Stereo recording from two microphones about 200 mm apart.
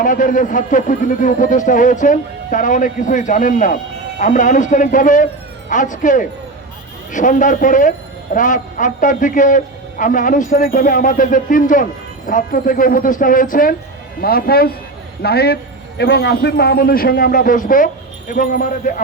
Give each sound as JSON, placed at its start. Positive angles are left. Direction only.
{"t": 0.0, "sound": "a man's voice", "side_deg": 40}